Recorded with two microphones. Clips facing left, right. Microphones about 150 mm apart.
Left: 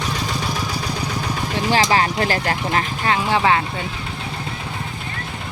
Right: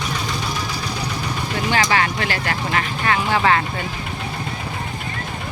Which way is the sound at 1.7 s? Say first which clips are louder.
Left 2 dB; 30° left (ahead or behind).